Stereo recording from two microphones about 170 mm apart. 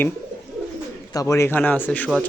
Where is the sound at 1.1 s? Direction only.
20° left (ahead or behind).